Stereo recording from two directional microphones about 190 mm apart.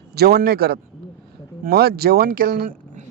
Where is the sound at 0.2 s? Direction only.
55° right (ahead or behind).